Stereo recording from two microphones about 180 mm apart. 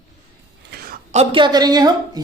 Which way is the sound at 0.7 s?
55° right (ahead or behind).